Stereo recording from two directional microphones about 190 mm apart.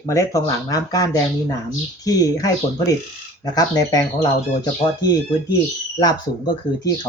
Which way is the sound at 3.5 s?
20° left (ahead or behind).